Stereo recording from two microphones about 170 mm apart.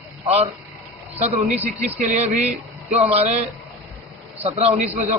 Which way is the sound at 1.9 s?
40° right (ahead or behind).